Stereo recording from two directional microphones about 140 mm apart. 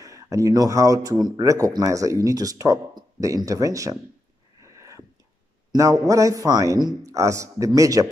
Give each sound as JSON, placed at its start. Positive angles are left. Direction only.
{"t": 0.0, "sound": "speech", "side_deg": -25}
{"t": 4.6, "sound": "a sound", "side_deg": -20}
{"t": 5.7, "sound": "speech", "side_deg": -25}